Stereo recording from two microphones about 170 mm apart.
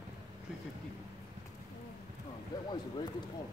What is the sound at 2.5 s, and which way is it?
Speech, 20° left (ahead or behind).